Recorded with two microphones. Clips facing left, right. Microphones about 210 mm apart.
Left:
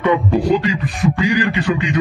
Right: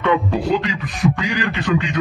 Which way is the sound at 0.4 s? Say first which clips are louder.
Left 4 dB; 10° left (ahead or behind).